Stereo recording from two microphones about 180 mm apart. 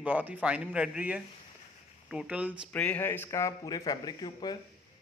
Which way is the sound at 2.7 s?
10° left (ahead or behind).